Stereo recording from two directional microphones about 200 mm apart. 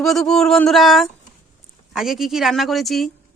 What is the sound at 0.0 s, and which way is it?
Speech, centre (ahead or behind).